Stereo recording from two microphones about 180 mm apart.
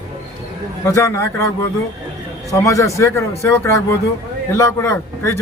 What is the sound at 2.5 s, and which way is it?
Speech, 15° left (ahead or behind).